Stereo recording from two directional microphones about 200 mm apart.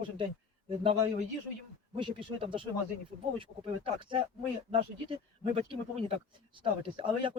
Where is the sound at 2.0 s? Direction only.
25° right (ahead or behind).